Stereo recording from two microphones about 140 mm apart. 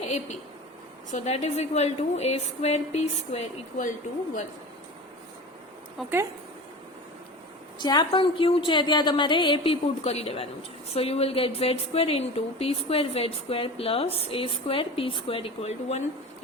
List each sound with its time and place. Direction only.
1.1 s a woman's voice: 55° left (ahead or behind)
7.8 s a woman's voice: 30° left (ahead or behind); by 16.0 s 50° left (ahead or behind)